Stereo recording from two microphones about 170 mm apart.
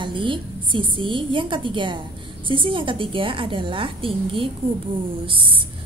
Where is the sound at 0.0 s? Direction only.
30° right (ahead or behind).